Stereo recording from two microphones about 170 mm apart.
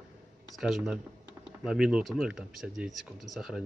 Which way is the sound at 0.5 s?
Centre (ahead or behind).